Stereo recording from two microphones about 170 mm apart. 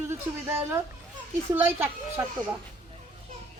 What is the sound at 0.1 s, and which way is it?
Speech, 15° right (ahead or behind).